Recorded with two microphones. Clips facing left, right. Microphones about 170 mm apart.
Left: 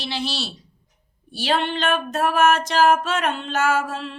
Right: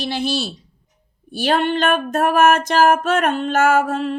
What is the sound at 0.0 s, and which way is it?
Music, 50° right (ahead or behind).